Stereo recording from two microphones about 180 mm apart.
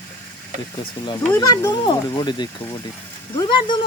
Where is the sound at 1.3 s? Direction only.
20° left (ahead or behind).